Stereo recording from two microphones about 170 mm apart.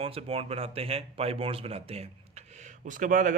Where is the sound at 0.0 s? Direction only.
35° right (ahead or behind).